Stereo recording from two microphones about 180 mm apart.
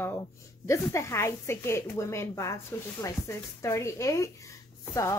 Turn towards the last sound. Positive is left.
turn(degrees=15)  # may be behind; listen again after turning